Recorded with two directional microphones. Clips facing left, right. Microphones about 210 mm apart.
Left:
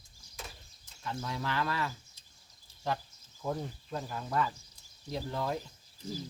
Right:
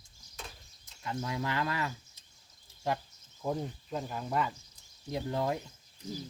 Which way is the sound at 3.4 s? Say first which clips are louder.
Right 2 dB; 15° right (ahead or behind).